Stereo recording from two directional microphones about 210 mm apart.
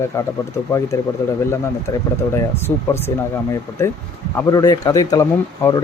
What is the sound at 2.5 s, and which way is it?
Speech, 10° left (ahead or behind).